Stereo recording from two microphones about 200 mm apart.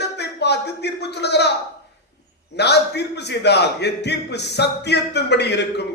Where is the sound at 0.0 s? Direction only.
55° left (ahead or behind).